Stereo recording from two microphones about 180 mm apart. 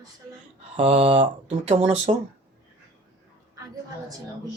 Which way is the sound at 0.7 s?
30° right (ahead or behind).